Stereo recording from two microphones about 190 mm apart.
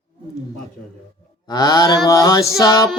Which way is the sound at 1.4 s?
20° left (ahead or behind).